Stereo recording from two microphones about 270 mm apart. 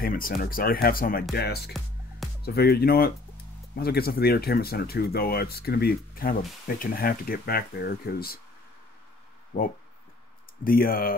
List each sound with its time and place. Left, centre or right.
0.0 s speech: left
9.5 s speech: left